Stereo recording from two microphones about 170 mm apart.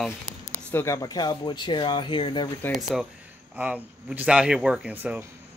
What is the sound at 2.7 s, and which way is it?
Speech, centre (ahead or behind).